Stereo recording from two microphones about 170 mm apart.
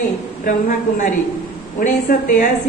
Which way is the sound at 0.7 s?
45° left (ahead or behind).